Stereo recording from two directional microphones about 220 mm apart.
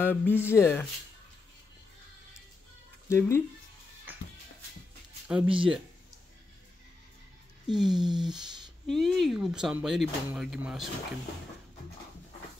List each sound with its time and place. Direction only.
0.0 s speech: 10° left (ahead or behind)
3.1 s speech: 10° left (ahead or behind)
5.3 s speech: 5° right (ahead or behind)
7.6 s a sound: 5° right (ahead or behind)
7.9 s speech: 20° right (ahead or behind)
8.8 s speech: centre (ahead or behind)